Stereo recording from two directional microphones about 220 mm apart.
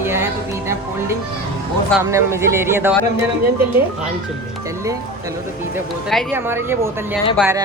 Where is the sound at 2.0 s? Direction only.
15° right (ahead or behind).